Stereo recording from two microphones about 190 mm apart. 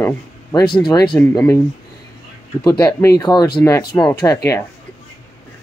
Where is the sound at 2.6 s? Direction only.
15° left (ahead or behind).